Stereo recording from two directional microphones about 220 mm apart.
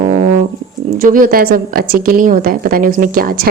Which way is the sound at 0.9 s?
40° right (ahead or behind).